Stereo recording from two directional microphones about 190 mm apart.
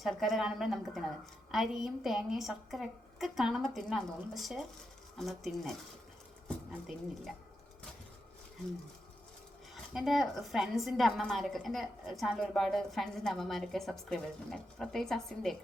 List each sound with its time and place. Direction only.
0.0 s a woman's voice: centre (ahead or behind)
9.9 s a woman's voice: centre (ahead or behind)